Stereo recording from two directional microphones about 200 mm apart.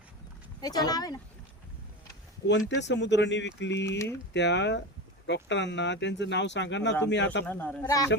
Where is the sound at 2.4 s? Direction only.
65° left (ahead or behind).